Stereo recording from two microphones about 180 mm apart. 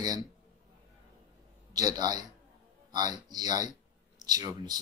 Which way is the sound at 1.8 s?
20° right (ahead or behind).